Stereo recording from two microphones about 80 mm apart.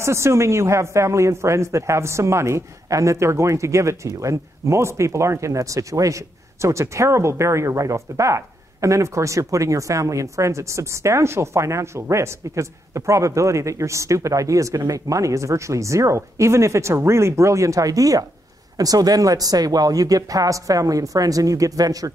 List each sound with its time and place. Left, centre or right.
0.0 s speech: right